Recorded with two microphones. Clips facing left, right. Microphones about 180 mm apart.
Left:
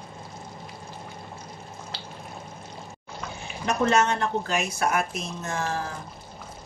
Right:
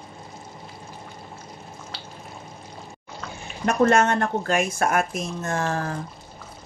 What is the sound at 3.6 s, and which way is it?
Speech, 50° right (ahead or behind).